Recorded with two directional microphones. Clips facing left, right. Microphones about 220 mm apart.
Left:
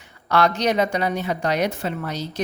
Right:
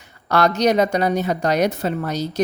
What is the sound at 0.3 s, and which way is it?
Speech, 40° right (ahead or behind).